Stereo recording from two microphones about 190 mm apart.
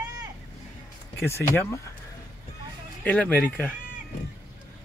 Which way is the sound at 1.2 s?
15° left (ahead or behind).